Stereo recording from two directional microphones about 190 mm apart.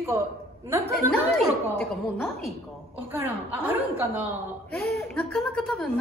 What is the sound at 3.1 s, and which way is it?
A woman's voice, 10° right (ahead or behind).